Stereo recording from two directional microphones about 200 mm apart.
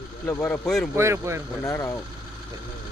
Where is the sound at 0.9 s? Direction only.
15° right (ahead or behind).